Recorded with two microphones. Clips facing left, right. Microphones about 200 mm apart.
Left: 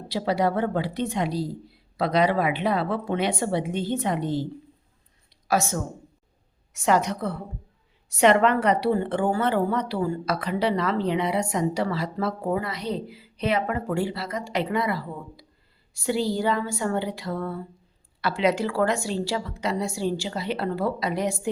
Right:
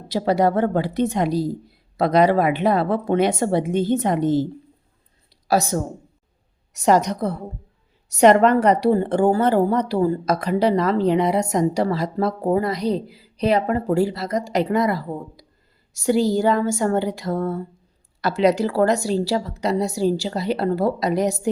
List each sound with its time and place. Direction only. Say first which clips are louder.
0.1 s speech: right 5 dB; 45° right (ahead or behind)
5.3 s a sound: right 5 dB; 35° right (ahead or behind)
6.7 s a woman's voice: right 5 dB; 40° right (ahead or behind)